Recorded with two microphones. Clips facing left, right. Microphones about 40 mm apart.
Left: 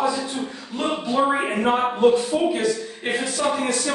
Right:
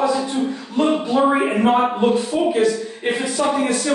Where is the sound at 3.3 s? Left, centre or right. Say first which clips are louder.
Right 4 dB; centre.